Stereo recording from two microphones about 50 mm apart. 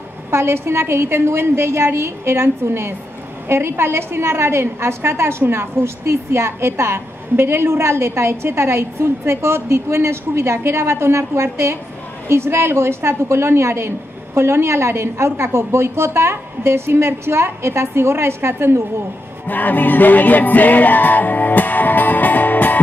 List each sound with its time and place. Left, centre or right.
0.3 s a woman's voice: right
19.4 s music: left